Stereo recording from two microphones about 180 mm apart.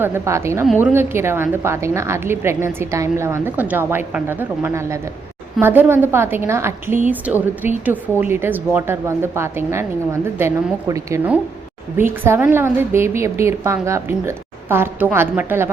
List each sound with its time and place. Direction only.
0.0 s a woman's voice: 15° right (ahead or behind)